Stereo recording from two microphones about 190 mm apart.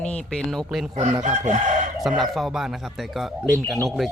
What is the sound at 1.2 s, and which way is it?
Chicken, 40° right (ahead or behind).